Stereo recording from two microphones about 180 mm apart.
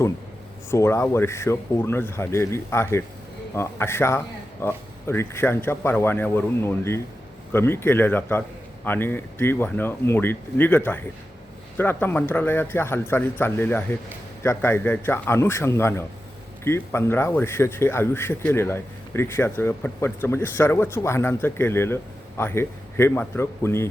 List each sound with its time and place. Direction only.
0.7 s speech: 15° left (ahead or behind)